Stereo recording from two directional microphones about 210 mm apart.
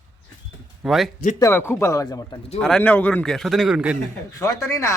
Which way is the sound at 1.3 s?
15° left (ahead or behind).